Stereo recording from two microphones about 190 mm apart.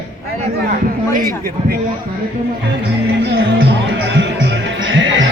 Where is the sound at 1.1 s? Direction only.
50° right (ahead or behind).